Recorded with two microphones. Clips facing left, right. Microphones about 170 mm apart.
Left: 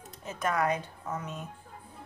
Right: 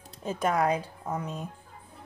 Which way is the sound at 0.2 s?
30° right (ahead or behind).